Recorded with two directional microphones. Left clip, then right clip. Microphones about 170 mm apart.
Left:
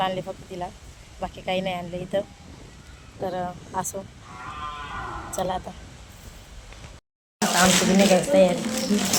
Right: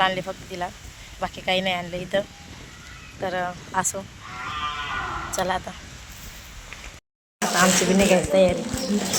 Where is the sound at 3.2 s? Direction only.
Centre (ahead or behind).